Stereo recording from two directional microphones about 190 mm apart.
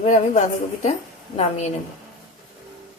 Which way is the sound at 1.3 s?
35° left (ahead or behind).